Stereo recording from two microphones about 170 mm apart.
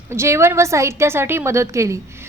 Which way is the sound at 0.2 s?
15° right (ahead or behind).